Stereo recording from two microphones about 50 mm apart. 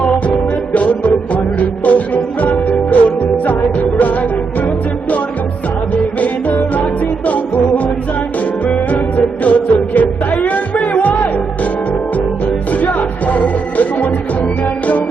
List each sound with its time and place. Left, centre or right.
0.7 s music: left
5.9 s music: left
8.6 s music: left
12.8 s music: left